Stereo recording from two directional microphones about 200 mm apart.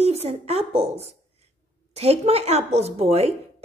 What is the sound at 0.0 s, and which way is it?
A woman's voice, 30° right (ahead or behind).